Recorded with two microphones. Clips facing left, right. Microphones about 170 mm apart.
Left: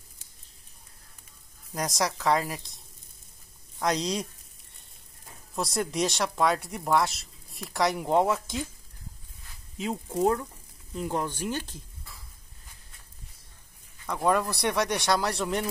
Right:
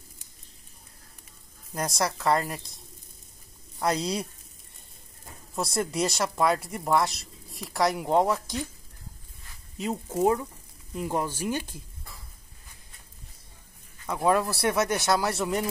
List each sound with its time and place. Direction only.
1.7 s speech: centre (ahead or behind)
3.8 s speech: 5° right (ahead or behind)
5.5 s speech: centre (ahead or behind)
9.8 s speech: 5° right (ahead or behind)
14.0 s speech: 5° right (ahead or behind)